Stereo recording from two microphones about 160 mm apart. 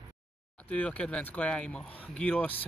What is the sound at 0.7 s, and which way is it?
Speech, 10° left (ahead or behind).